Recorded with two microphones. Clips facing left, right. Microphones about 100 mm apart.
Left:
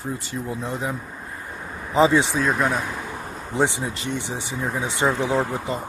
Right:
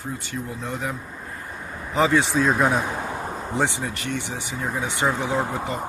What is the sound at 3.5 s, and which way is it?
Speech, 20° left (ahead or behind).